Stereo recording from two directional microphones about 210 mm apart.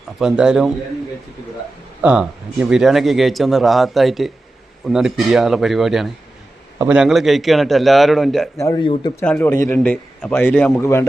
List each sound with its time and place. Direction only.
0.2 s speech: 5° right (ahead or behind)
2.0 s speech: 5° right (ahead or behind)
8.5 s speech: 15° left (ahead or behind)
9.2 s a man's voice: 5° left (ahead or behind)